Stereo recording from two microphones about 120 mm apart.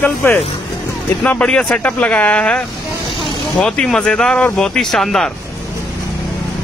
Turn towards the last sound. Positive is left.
turn(degrees=0)  # may be behind; listen again after turning